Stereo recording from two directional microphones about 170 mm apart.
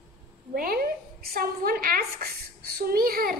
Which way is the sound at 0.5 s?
60° right (ahead or behind).